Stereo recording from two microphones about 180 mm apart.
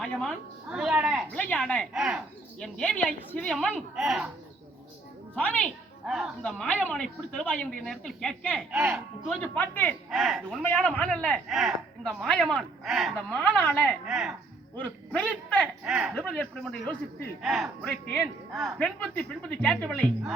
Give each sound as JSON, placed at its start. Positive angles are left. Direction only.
{"t": 0.0, "sound": "a man's voice", "side_deg": 5}
{"t": 1.3, "sound": "a man's voice", "side_deg": 5}
{"t": 2.6, "sound": "a man's voice", "side_deg": 5}
{"t": 5.3, "sound": "a man's voice", "side_deg": 10}
{"t": 8.7, "sound": "speech", "side_deg": -5}
{"t": 9.3, "sound": "a man's voice", "side_deg": 5}
{"t": 14.1, "sound": "a man's voice", "side_deg": -5}
{"t": 15.8, "sound": "a man's voice", "side_deg": -5}
{"t": 18.8, "sound": "a man's voice", "side_deg": 5}